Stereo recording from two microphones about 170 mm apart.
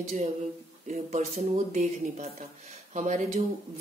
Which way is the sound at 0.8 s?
45° right (ahead or behind).